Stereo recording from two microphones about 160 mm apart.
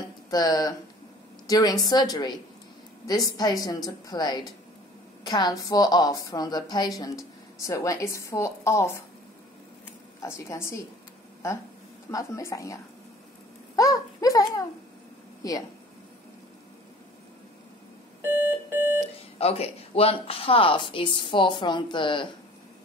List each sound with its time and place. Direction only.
0.3 s a woman's voice: 25° left (ahead or behind)
10.2 s a woman's voice: 15° left (ahead or behind)
13.7 s a sound: 20° left (ahead or behind)
15.4 s a woman's voice: 20° left (ahead or behind)
19.3 s speech: 40° left (ahead or behind)